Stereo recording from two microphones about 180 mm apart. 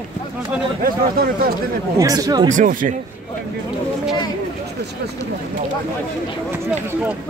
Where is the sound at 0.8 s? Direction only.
55° right (ahead or behind).